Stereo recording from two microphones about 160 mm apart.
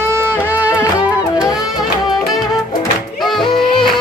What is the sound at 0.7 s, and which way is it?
Music, 20° left (ahead or behind).